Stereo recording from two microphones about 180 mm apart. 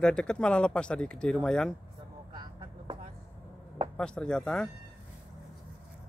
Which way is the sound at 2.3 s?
25° right (ahead or behind).